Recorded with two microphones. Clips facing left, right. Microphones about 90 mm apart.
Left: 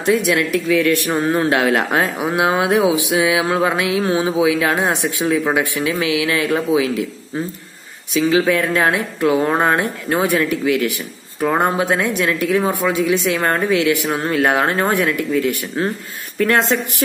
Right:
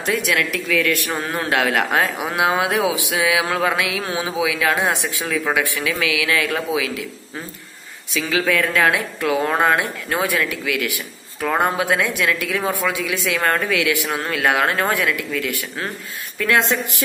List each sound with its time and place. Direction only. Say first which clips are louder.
0.0 s a man's voice: left 5 dB; 20° left (ahead or behind)
8.1 s a man's voice: left 5 dB; 30° left (ahead or behind)